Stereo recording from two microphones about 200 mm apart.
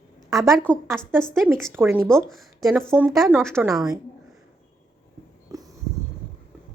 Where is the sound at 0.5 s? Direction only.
5° left (ahead or behind).